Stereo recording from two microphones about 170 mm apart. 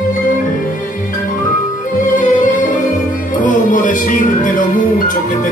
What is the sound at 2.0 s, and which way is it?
Music, 50° left (ahead or behind).